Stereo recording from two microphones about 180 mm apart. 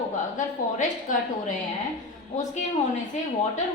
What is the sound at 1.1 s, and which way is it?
Speech, 45° left (ahead or behind).